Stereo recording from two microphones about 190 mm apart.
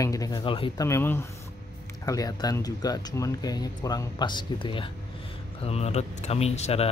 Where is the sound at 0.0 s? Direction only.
20° left (ahead or behind).